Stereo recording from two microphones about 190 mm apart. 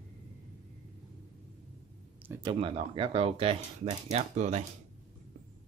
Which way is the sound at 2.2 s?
10° right (ahead or behind).